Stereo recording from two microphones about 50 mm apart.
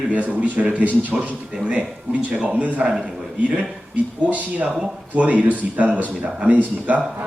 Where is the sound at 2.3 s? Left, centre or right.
Right.